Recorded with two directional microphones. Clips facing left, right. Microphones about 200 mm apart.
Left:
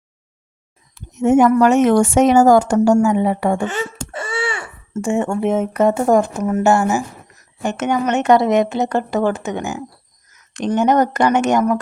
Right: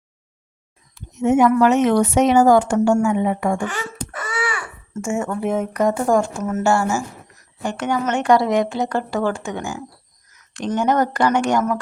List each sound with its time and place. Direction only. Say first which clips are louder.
1.2 s speech: left 3 dB; 45° left (ahead or behind)
3.6 s wail: left 4 dB; 25° left (ahead or behind)
5.0 s speech: left 4 dB; 30° left (ahead or behind)